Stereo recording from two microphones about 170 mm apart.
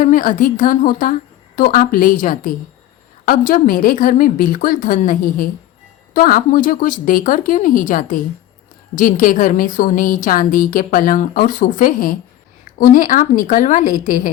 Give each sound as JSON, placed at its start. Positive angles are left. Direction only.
{"t": 0.0, "sound": "a woman's voice", "side_deg": 50}